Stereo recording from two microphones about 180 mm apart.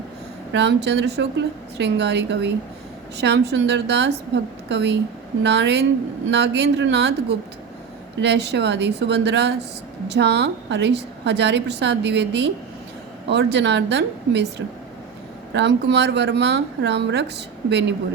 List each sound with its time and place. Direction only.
0.5 s a woman's voice: 70° right (ahead or behind)
15.5 s a woman's voice: 70° right (ahead or behind)